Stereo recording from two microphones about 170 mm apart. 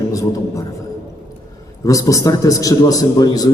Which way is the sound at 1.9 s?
20° left (ahead or behind).